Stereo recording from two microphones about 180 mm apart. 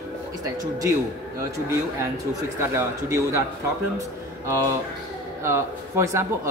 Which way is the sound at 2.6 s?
15° right (ahead or behind).